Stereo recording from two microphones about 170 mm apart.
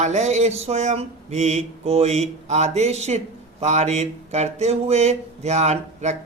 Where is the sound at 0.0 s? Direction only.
45° right (ahead or behind).